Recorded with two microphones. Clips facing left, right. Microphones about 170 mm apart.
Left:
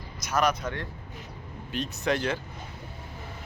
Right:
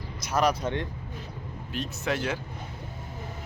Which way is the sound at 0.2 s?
30° right (ahead or behind).